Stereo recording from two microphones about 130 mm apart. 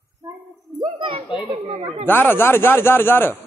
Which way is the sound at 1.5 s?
45° right (ahead or behind).